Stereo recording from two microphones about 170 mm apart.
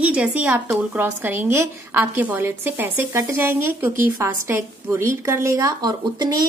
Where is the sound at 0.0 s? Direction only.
5° right (ahead or behind).